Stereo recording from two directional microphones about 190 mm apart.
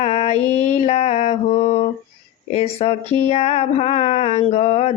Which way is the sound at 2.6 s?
35° left (ahead or behind).